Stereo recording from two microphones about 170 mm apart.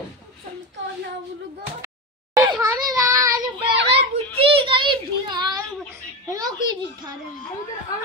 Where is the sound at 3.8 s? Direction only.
35° right (ahead or behind).